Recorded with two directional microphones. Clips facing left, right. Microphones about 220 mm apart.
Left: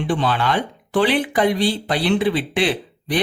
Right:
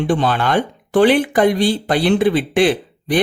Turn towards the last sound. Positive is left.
turn(degrees=-50)  # may be behind; listen again after turning